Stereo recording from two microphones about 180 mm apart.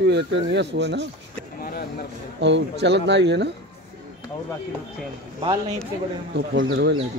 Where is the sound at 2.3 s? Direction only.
80° right.